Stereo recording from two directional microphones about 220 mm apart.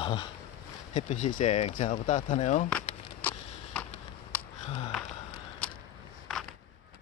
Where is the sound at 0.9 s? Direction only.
30° left (ahead or behind).